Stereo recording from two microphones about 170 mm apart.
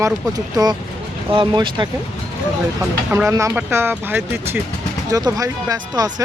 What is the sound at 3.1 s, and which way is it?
Speech, 15° right (ahead or behind).